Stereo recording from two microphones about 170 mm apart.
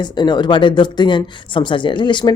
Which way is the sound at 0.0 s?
25° left (ahead or behind).